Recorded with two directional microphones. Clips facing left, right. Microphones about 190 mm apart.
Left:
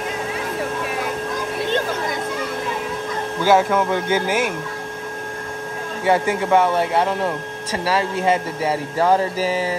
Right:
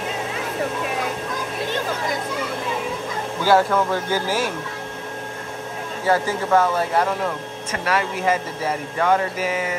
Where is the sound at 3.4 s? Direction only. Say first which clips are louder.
Left 1 dB; 20° left (ahead or behind).